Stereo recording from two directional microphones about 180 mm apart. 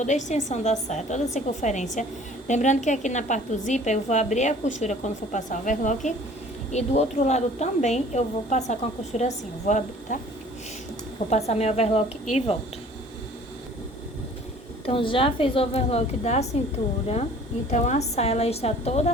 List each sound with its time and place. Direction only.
0.0 s a woman's voice: 40° left (ahead or behind)
11.3 s a woman's voice: 35° left (ahead or behind)
14.8 s a woman's voice: 30° left (ahead or behind)
17.7 s a woman's voice: 40° left (ahead or behind)